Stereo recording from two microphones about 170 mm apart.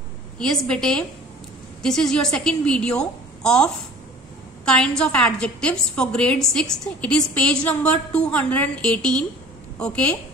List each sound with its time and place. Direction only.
0.4 s a woman's voice: 5° left (ahead or behind)